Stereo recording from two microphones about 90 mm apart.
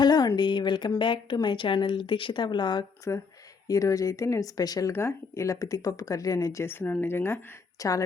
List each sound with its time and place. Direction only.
0.0 s a sound: 50° left (ahead or behind)
0.3 s speech: 60° left (ahead or behind)
3.1 s speech: 30° left (ahead or behind)
4.9 s speech: 30° left (ahead or behind)
7.8 s speech: 40° left (ahead or behind)